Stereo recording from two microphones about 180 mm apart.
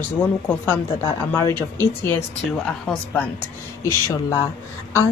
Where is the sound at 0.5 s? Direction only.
10° left (ahead or behind).